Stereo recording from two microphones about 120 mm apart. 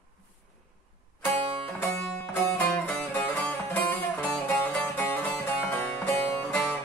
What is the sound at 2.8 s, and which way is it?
Music, 15° left (ahead or behind).